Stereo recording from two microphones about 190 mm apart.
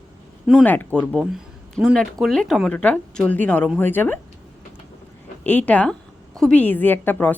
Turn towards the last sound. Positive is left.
turn(degrees=10)  # may be behind; listen again after turning